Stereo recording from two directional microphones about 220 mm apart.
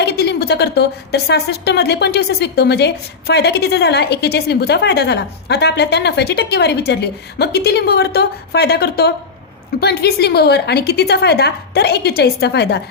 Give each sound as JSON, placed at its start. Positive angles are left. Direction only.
{"t": 0.0, "sound": "a woman's voice", "side_deg": 50}